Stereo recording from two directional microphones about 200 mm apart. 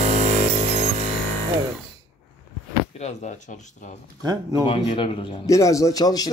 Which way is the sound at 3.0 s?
35° left (ahead or behind).